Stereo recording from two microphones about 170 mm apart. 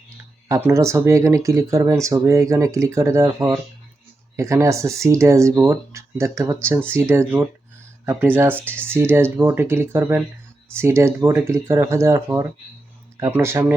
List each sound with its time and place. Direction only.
0.4 s speech: 20° right (ahead or behind)